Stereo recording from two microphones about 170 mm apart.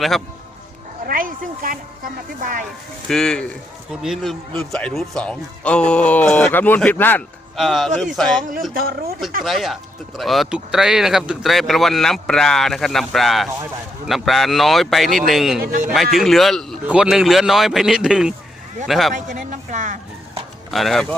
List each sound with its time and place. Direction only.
1.0 s speech: 55° right (ahead or behind)
3.1 s speech: 5° left (ahead or behind)
7.5 s speech: centre (ahead or behind)
8.7 s speech: 60° right (ahead or behind)
9.4 s speech: centre (ahead or behind)
15.6 s speech: 55° right (ahead or behind)
16.1 s speech: centre (ahead or behind)
19.1 s speech: 45° right (ahead or behind)
20.7 s speech: centre (ahead or behind)